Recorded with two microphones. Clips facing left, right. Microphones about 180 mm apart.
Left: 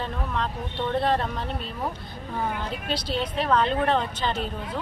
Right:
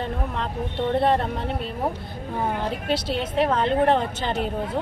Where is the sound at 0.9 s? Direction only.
60° right (ahead or behind).